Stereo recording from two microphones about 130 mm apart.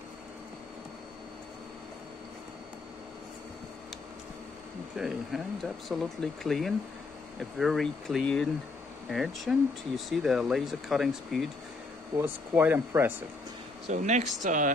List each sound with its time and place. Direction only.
4.9 s speech: centre (ahead or behind)
12.2 s speech: 15° right (ahead or behind)
13.8 s speech: 65° right (ahead or behind)